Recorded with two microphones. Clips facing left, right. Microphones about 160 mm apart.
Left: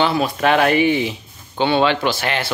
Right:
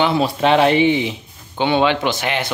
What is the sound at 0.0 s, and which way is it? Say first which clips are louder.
Speech: right 1 dB; 25° right (ahead or behind).